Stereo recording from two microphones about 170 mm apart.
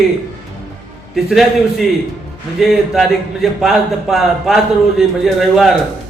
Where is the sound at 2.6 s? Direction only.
Centre (ahead or behind).